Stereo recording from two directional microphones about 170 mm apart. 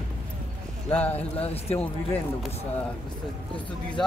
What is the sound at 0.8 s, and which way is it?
Speech, 10° left (ahead or behind).